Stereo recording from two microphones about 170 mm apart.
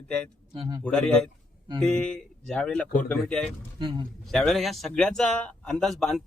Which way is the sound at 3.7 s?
25° right (ahead or behind).